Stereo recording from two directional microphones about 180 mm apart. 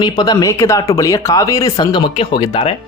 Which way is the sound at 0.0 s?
20° left (ahead or behind).